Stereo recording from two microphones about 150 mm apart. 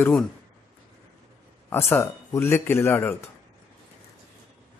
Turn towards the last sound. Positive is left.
turn(degrees=15)  # may be behind; listen again after turning